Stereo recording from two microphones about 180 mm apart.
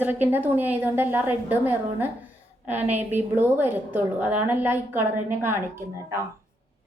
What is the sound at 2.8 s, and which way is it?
Speech, 40° right (ahead or behind).